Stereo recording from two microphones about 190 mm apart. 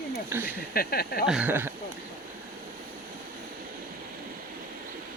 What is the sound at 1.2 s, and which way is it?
Speech, 5° right (ahead or behind).